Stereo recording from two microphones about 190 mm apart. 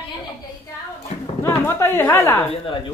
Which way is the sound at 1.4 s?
15° left (ahead or behind).